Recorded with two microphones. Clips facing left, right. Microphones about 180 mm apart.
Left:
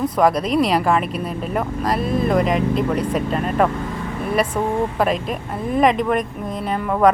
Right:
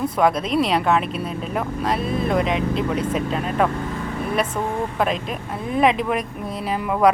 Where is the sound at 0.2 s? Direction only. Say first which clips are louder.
Left 2 dB; centre (ahead or behind).